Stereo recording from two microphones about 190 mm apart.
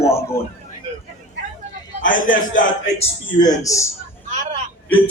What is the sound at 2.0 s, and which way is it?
A man's voice, 45° left (ahead or behind).